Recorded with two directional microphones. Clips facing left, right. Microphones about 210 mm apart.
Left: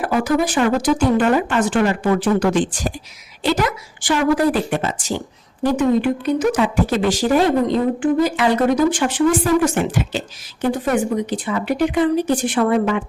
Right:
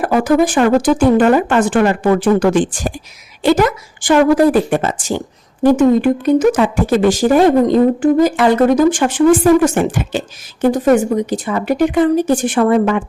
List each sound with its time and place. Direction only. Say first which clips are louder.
0.0 s speech: right 5 dB; 50° right (ahead or behind)